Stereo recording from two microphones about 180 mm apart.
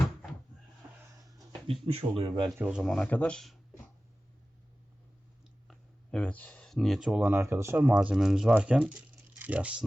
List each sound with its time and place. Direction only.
1.9 s speech: 30° right (ahead or behind)
2.6 s a man's voice: 10° right (ahead or behind)
2.8 s speech: 5° left (ahead or behind)
5.6 s speech: 5° left (ahead or behind)